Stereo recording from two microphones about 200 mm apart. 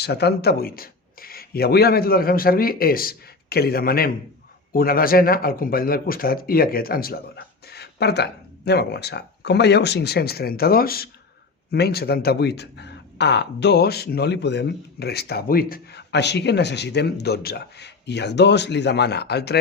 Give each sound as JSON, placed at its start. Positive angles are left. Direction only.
{"t": 0.0, "sound": "speech", "side_deg": 55}